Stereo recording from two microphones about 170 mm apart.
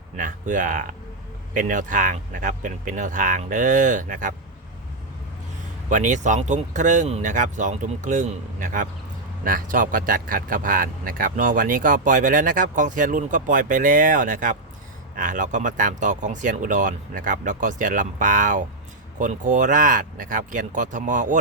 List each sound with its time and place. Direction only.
0.2 s speech: 50° right (ahead or behind)
5.9 s speech: 45° right (ahead or behind)